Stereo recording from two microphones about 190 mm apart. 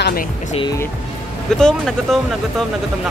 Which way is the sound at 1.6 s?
5° left (ahead or behind).